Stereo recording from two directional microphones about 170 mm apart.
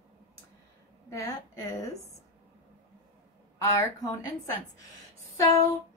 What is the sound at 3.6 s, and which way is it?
A woman's voice, 15° left (ahead or behind).